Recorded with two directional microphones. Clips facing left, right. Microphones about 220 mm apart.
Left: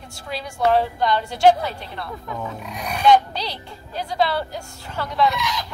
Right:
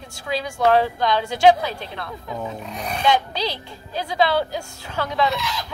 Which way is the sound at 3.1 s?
90° right.